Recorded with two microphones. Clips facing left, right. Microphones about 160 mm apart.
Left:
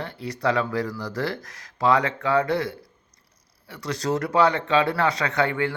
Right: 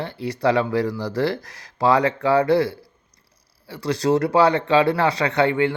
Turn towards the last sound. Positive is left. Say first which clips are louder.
# right 5 dB
turn(degrees=-25)  # may be behind; listen again after turning